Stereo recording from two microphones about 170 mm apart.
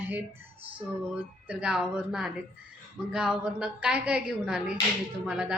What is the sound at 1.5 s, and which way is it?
A woman's voice, 5° right (ahead or behind).